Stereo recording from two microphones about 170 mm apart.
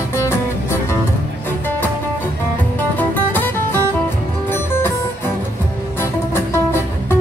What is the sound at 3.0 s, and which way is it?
Music, 10° left (ahead or behind).